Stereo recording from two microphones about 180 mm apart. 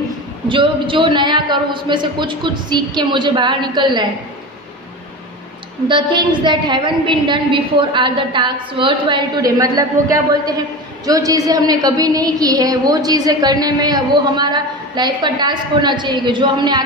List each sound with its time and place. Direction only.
0.5 s a woman's voice: 30° right (ahead or behind)
5.9 s a woman's voice: 25° right (ahead or behind)